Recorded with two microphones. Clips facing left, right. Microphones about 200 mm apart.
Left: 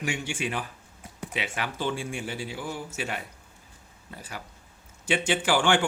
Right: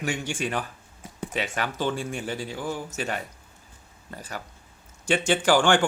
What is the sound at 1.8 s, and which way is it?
Speech, 40° right (ahead or behind).